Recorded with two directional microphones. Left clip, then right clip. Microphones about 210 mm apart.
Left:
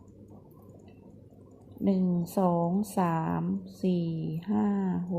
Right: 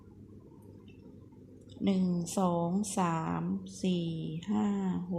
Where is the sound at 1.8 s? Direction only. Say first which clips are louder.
Left 3 dB; 20° left (ahead or behind).